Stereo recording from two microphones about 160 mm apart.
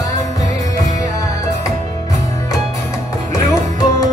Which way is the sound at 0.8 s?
20° left (ahead or behind).